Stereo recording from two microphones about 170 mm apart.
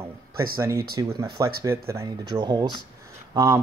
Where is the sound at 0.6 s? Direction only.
15° right (ahead or behind).